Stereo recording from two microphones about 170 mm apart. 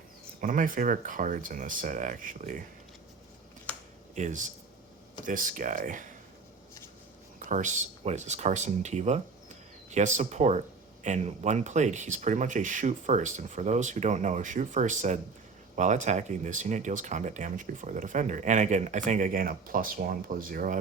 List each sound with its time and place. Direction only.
0.4 s speech: 50° right (ahead or behind)
4.1 s speech: 45° right (ahead or behind)
7.3 s speech: 45° right (ahead or behind)